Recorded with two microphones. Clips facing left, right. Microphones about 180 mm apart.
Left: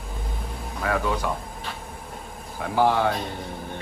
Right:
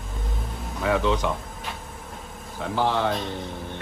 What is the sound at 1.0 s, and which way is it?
Speech, 10° left (ahead or behind).